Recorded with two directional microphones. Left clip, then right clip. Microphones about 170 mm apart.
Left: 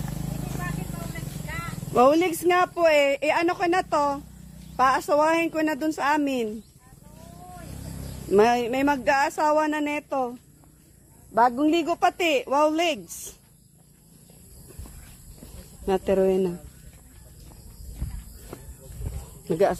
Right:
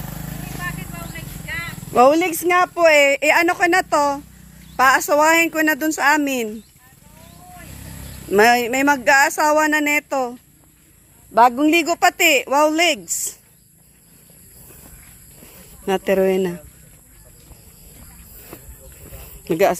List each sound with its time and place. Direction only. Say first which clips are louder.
2.0 s speech: right 5 dB; 25° right (ahead or behind)
8.3 s speech: right 6 dB; 20° right (ahead or behind)
8.5 s speech: right 6 dB; 30° right (ahead or behind)
11.3 s speech: right 7 dB; 25° right (ahead or behind)
15.5 s speech: right 4 dB; 25° right (ahead or behind)
18.5 s music: right 2 dB; 20° right (ahead or behind)
19.4 s speech: right 5 dB; 15° right (ahead or behind)